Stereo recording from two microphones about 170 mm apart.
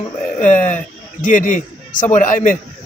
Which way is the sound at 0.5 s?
50° left (ahead or behind).